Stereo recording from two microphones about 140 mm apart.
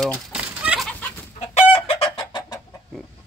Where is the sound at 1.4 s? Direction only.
45° left (ahead or behind).